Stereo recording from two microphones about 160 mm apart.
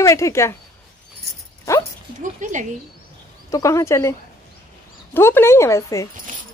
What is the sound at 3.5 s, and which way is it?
Speech, 20° left (ahead or behind).